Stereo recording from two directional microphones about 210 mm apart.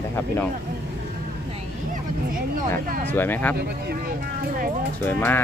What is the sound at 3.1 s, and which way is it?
Speech, 10° left (ahead or behind).